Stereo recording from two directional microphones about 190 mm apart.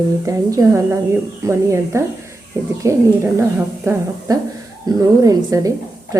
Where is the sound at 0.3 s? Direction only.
15° right (ahead or behind).